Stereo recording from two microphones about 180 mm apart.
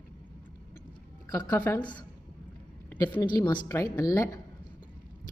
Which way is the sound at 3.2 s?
25° left (ahead or behind).